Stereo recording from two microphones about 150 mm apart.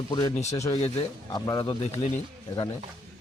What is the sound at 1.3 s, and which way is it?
Speech, 25° left (ahead or behind).